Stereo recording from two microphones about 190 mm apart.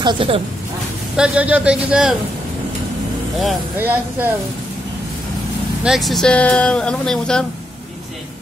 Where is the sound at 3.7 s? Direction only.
10° right (ahead or behind).